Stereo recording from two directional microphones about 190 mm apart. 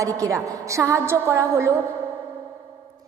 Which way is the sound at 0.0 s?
15° right (ahead or behind).